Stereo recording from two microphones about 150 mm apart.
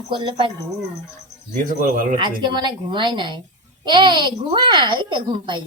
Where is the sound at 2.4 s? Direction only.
30° right (ahead or behind).